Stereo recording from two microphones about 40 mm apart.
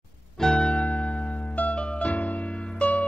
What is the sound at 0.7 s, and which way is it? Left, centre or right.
Electric piano, left.